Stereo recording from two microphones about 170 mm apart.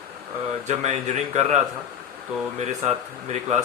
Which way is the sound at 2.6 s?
40° right (ahead or behind).